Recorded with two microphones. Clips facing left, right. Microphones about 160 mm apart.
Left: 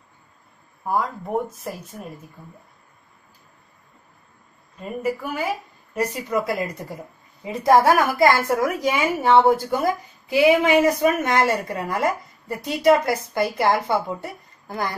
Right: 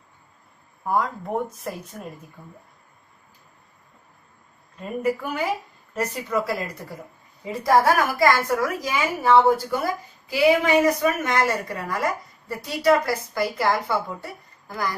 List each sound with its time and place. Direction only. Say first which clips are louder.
0.8 s speech: even; 5° left (ahead or behind)
5.0 s speech: right 1 dB; 5° left (ahead or behind)
5.9 s a woman's voice: left 2 dB; 15° left (ahead or behind)